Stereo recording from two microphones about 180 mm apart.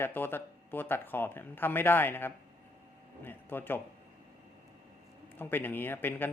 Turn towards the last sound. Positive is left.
turn(degrees=10)  # may be behind; listen again after turning